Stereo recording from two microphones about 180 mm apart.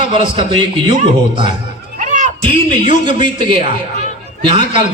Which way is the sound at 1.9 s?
45° right (ahead or behind).